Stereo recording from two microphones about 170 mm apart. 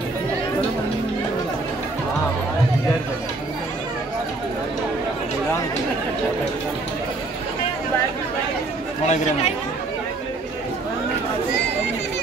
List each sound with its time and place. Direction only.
9.0 s speech: 40° left (ahead or behind)